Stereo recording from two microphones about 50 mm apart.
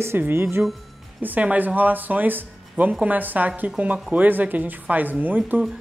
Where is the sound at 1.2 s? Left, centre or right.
Right.